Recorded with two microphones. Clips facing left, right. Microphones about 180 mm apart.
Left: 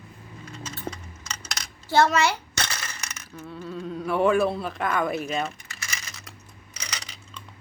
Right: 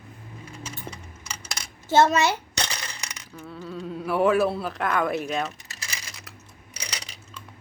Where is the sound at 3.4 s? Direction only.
Centre (ahead or behind).